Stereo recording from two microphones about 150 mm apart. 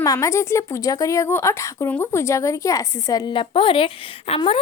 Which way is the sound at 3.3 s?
35° left (ahead or behind).